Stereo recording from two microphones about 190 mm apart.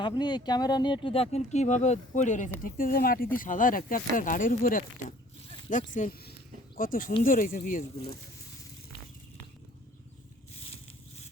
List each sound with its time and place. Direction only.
0.0 s speech: 20° left (ahead or behind); by 8.2 s 50° left (ahead or behind)